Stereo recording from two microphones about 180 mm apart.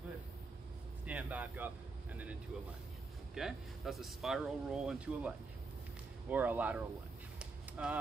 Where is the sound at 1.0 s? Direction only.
10° right (ahead or behind).